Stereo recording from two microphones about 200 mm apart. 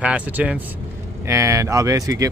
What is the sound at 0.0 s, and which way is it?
Speech, 5° right (ahead or behind).